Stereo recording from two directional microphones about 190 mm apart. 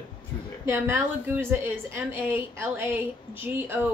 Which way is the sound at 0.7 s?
10° right (ahead or behind).